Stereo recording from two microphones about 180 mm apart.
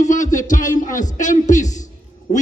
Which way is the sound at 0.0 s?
45° left (ahead or behind).